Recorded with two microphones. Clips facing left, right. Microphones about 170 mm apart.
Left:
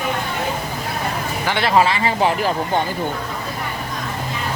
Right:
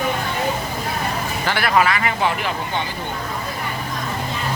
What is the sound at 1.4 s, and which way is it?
Speech, 25° left (ahead or behind).